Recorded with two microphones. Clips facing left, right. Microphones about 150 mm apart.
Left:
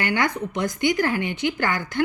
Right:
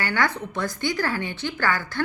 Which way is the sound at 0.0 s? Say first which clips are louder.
Left 2 dB; 20° left (ahead or behind).